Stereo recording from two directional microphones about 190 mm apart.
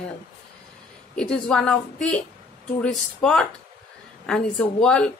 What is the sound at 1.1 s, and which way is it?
A woman's voice, 5° left (ahead or behind).